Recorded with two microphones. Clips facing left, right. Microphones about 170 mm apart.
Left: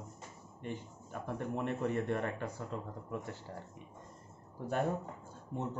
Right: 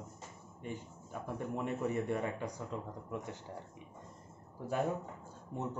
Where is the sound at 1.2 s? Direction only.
10° right (ahead or behind).